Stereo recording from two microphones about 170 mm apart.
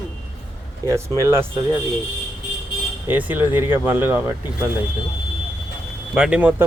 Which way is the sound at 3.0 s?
10° right (ahead or behind).